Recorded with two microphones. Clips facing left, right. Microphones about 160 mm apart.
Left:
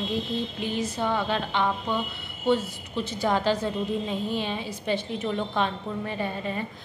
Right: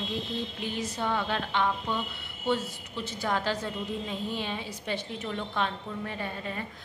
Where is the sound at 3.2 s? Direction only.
20° left (ahead or behind).